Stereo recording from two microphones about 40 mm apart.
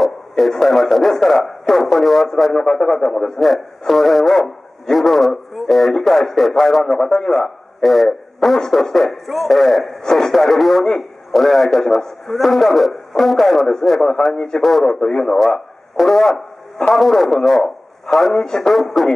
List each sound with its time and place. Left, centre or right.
0.5 s a man's voice: centre
2.5 s speech: centre
3.3 s a man's voice: centre
7.8 s speech: centre
8.5 s a man's voice: centre
14.3 s speech: centre
14.6 s a man's voice: centre